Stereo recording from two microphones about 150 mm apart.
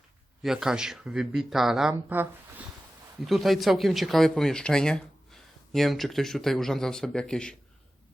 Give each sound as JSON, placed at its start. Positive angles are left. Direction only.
{"t": 0.4, "sound": "speech", "side_deg": -5}
{"t": 3.2, "sound": "speech", "side_deg": 0}